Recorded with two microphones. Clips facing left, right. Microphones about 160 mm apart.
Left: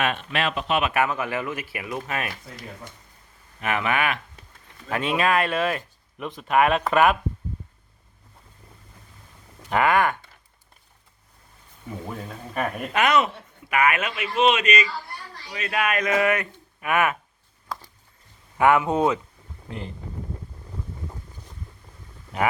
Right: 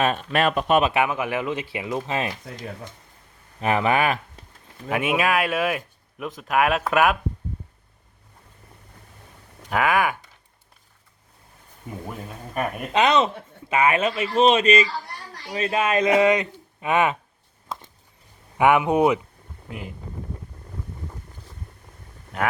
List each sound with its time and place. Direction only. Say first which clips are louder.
0.0 s speech: right 4 dB; 40° right (ahead or behind)
0.9 s a man's voice: right 1 dB; 15° right (ahead or behind)
3.6 s speech: right 4 dB; 30° right (ahead or behind)
4.9 s speech: right 1 dB; 10° right (ahead or behind)
9.6 s speech: left 1 dB; 5° right (ahead or behind)
12.9 s a man's voice: right 2 dB; 20° right (ahead or behind)
17.7 s a sound: even; 25° right (ahead or behind)
18.5 s speech: right 1 dB; 15° right (ahead or behind)